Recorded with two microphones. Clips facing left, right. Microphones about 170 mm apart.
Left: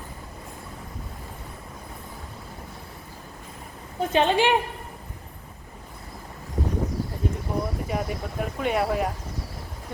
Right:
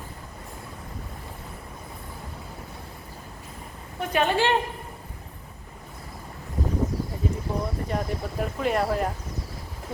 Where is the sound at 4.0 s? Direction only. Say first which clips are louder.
Left 2 dB; 25° left (ahead or behind).